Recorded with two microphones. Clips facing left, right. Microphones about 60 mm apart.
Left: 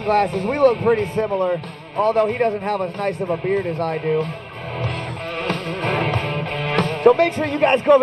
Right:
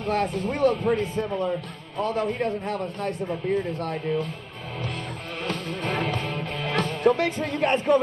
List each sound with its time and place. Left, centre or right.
0.0 s speech: left
5.4 s music: left